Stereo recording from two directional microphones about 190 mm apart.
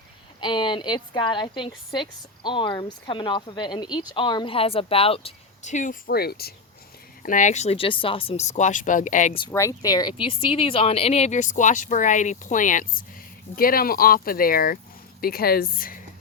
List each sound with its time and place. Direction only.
0.3 s a woman's voice: 25° left (ahead or behind); by 6.5 s 55° left (ahead or behind)
7.2 s speech: 45° left (ahead or behind)
9.5 s speech: 15° left (ahead or behind); by 16.0 s 50° left (ahead or behind)